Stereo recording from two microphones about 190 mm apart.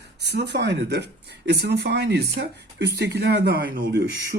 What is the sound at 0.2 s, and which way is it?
Speech, 60° right (ahead or behind).